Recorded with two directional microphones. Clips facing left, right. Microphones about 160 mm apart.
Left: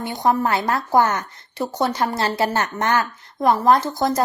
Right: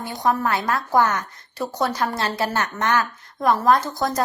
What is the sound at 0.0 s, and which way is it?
A woman's voice, 25° left (ahead or behind).